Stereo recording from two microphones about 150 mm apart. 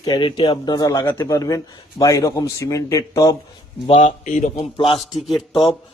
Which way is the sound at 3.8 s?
40° left (ahead or behind).